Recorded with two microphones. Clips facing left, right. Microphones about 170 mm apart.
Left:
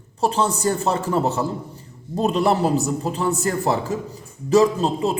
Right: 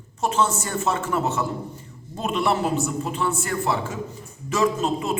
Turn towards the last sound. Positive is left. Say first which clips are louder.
# left 2 dB
turn(degrees=35)  # may be behind; listen again after turning